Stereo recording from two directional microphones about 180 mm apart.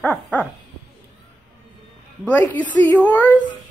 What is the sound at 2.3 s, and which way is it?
Speech, 10° left (ahead or behind).